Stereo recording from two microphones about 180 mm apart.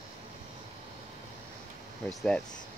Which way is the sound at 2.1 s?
Centre (ahead or behind).